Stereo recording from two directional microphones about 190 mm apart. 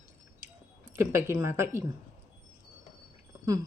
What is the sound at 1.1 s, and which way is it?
Speech, 15° right (ahead or behind).